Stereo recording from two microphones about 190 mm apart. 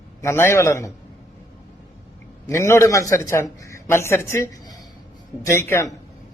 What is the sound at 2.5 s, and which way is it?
A man's voice, 15° left (ahead or behind).